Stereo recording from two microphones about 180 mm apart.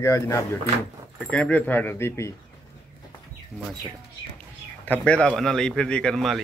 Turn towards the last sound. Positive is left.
turn(degrees=0)  # may be behind; listen again after turning